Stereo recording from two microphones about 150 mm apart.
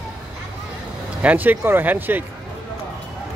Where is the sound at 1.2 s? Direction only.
10° right (ahead or behind).